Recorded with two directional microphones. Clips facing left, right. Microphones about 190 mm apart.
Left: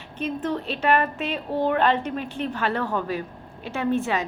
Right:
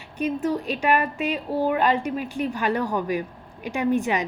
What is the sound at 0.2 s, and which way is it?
A woman's voice, 10° right (ahead or behind).